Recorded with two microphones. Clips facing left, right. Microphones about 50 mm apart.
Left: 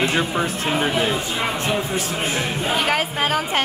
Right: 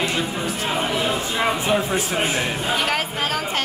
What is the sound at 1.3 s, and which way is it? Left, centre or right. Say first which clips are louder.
Speech: right 2 dB; centre.